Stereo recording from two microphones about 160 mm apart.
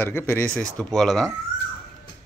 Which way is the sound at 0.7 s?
Centre (ahead or behind).